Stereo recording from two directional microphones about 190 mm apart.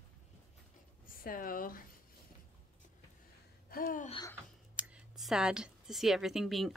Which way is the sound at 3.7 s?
45° left (ahead or behind).